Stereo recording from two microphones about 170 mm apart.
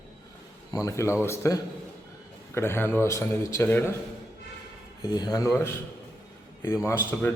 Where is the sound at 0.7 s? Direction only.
20° left (ahead or behind).